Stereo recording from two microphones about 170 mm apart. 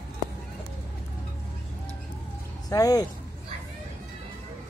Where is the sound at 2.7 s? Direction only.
20° left (ahead or behind).